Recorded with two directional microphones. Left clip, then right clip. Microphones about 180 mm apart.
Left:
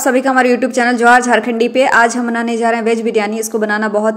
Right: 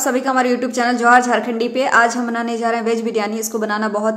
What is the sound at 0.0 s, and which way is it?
A woman's voice, 20° left (ahead or behind).